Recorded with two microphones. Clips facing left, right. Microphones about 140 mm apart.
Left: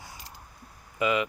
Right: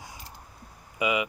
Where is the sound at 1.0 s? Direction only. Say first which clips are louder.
Left 1 dB; 15° right (ahead or behind).